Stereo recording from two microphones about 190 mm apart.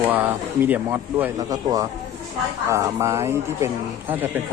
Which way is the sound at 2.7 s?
15° right (ahead or behind).